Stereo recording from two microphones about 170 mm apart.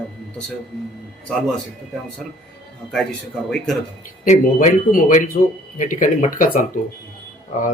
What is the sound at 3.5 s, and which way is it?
Speech, 5° left (ahead or behind).